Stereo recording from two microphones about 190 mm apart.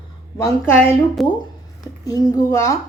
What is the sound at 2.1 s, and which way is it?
Speech, 20° left (ahead or behind).